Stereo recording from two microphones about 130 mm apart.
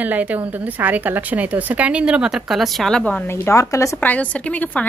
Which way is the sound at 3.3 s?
20° left (ahead or behind).